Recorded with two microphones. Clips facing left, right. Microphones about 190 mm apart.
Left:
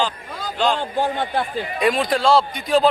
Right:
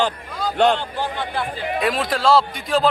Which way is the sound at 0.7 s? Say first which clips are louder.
Left 4 dB; 50° left (ahead or behind).